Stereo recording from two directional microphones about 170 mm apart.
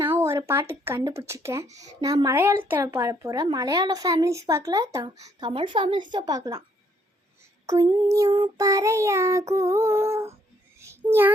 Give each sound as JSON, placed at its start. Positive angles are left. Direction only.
{"t": 0.0, "sound": "speech", "side_deg": -15}
{"t": 7.7, "sound": "speech", "side_deg": -25}
{"t": 8.3, "sound": "child singing", "side_deg": -25}
{"t": 10.8, "sound": "a sound", "side_deg": -15}